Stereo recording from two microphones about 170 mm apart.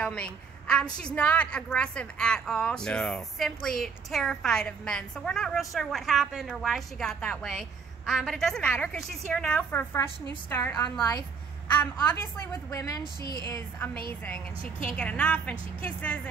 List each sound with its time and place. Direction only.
0.0 s a woman's voice: 5° left (ahead or behind)
14.8 s a woman's voice: 5° left (ahead or behind)